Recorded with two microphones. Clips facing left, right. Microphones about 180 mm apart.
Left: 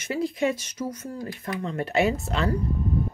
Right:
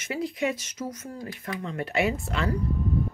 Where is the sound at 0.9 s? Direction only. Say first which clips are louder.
Left 3 dB; 30° left (ahead or behind).